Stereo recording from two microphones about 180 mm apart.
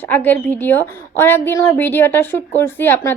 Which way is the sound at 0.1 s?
10° left (ahead or behind).